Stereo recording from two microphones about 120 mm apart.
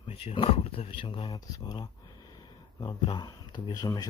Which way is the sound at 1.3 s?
30° left (ahead or behind).